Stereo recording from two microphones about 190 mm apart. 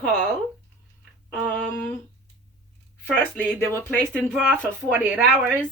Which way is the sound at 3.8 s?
10° left (ahead or behind).